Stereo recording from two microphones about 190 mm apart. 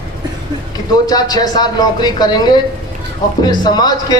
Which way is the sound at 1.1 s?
20° left (ahead or behind).